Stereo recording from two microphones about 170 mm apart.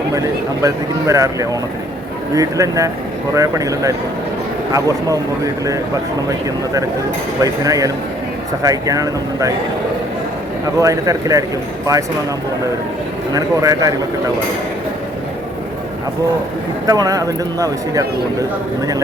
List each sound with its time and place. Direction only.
0.1 s speech: 20° right (ahead or behind)
7.4 s speech: 20° right (ahead or behind)
10.8 s speech: 20° right (ahead or behind)
13.3 s speech: 20° right (ahead or behind)
16.8 s speech: 20° right (ahead or behind)